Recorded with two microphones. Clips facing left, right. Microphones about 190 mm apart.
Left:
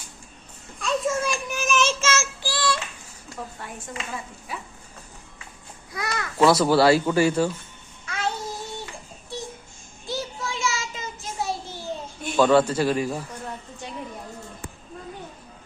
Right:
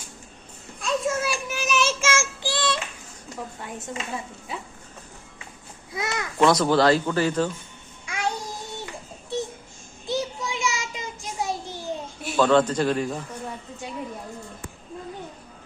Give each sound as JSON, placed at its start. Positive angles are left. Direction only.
{"t": 0.8, "sound": "child singing", "side_deg": -5}
{"t": 4.5, "sound": "a child's voice", "side_deg": -25}
{"t": 5.9, "sound": "a child's voice", "side_deg": -20}
{"t": 6.4, "sound": "speech", "side_deg": 5}
{"t": 8.0, "sound": "babbling", "side_deg": -10}
{"t": 10.1, "sound": "child singing", "side_deg": -20}
{"t": 12.4, "sound": "speech", "side_deg": 10}